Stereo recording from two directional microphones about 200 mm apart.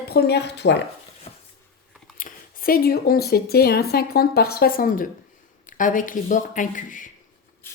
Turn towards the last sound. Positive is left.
turn(degrees=40)  # may be behind; listen again after turning